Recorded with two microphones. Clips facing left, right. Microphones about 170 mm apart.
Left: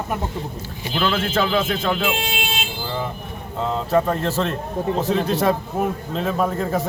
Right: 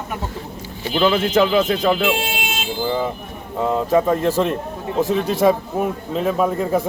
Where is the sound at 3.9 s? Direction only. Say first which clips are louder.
Right 2 dB; 10° right (ahead or behind).